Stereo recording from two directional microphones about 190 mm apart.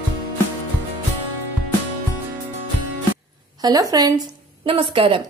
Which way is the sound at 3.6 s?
20° right (ahead or behind).